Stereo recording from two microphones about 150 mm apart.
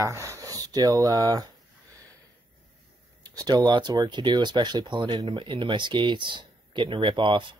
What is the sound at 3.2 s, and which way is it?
Speech, 25° right (ahead or behind).